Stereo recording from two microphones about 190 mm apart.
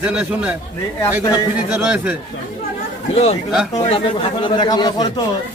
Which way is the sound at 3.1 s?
30° left (ahead or behind).